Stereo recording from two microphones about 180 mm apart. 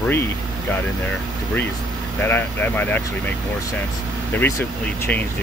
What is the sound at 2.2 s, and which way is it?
Speech, 10° left (ahead or behind).